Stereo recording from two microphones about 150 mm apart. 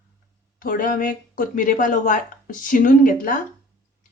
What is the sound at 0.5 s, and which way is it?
Speech, 70° left (ahead or behind).